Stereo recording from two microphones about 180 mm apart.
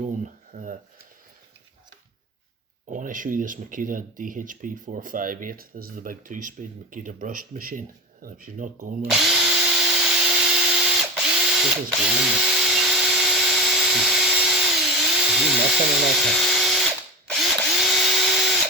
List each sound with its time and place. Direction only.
0.5 s speech: 45° right (ahead or behind)
2.9 s speech: 45° right (ahead or behind)
9.0 s drill: centre (ahead or behind)